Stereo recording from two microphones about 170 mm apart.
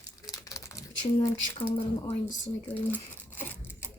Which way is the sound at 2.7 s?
10° left (ahead or behind).